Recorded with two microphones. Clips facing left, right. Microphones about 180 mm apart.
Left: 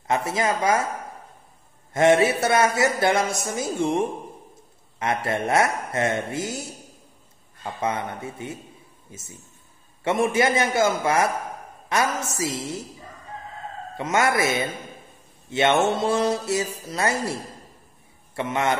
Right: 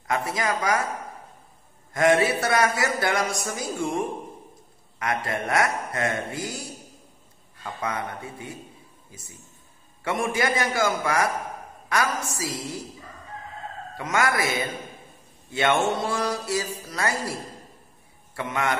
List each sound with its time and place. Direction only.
0.0 s music: 25° left (ahead or behind)
2.0 s music: 25° left (ahead or behind)
13.9 s music: 25° left (ahead or behind)